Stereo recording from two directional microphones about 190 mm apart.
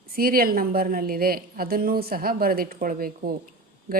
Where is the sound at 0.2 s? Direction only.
50° right (ahead or behind).